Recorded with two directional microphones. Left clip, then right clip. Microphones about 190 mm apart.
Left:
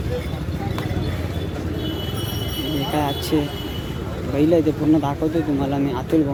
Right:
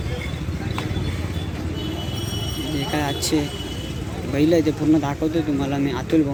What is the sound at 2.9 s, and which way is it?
A man's voice, centre (ahead or behind).